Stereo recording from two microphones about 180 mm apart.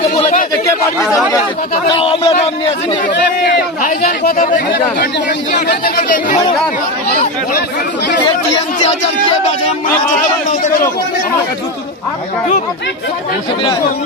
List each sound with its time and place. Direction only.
2.0 s a man's voice: 30° left (ahead or behind)
3.4 s speech: 55° left (ahead or behind)
8.8 s a man's voice: 40° left (ahead or behind)